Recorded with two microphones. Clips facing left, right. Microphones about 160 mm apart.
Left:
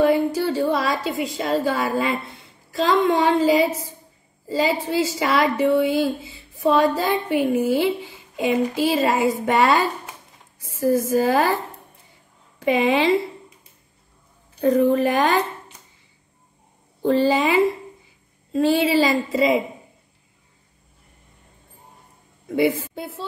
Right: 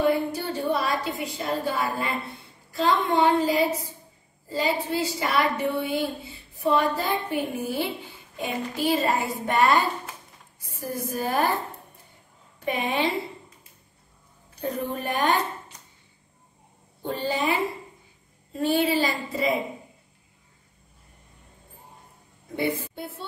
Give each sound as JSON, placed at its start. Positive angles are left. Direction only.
{"t": 0.0, "sound": "a sound", "side_deg": 90}
{"t": 2.7, "sound": "a woman's voice", "side_deg": 90}
{"t": 12.5, "sound": "a woman's voice", "side_deg": 90}
{"t": 14.6, "sound": "a woman's voice", "side_deg": 90}
{"t": 17.0, "sound": "a woman's voice", "side_deg": 90}
{"t": 22.6, "sound": "a woman's voice", "side_deg": 90}